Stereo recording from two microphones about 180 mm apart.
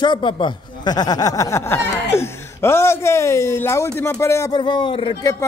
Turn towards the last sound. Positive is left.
turn(degrees=30)  # may be behind; listen again after turning